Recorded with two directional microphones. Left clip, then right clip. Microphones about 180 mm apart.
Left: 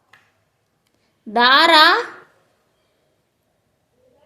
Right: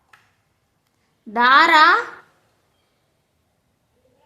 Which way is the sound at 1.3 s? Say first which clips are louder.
Left 1 dB; 15° left (ahead or behind).